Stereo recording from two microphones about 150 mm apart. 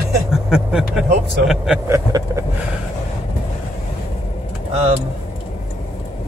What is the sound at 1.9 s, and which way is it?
Vehicle, 20° right (ahead or behind).